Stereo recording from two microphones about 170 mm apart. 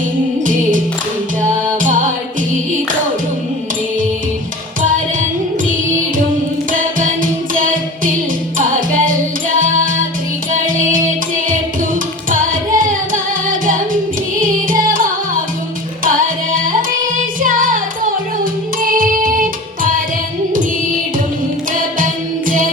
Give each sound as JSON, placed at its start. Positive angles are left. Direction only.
{"t": 1.4, "sound": "music", "side_deg": -50}
{"t": 6.7, "sound": "music", "side_deg": -50}
{"t": 17.2, "sound": "music", "side_deg": -50}
{"t": 21.9, "sound": "music", "side_deg": -55}